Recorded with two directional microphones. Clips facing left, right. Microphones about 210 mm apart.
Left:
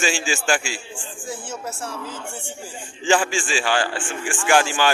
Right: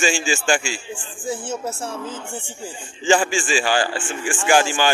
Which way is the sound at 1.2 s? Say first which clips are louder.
Right 6 dB; 25° right (ahead or behind).